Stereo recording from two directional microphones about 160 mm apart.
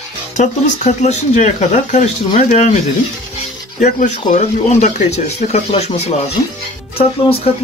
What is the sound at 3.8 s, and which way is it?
Speech, 50° left (ahead or behind).